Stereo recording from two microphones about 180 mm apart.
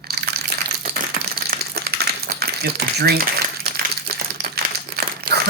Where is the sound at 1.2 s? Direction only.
60° right (ahead or behind).